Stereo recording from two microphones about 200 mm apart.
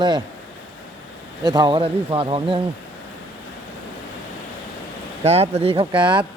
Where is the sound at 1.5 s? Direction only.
20° right (ahead or behind).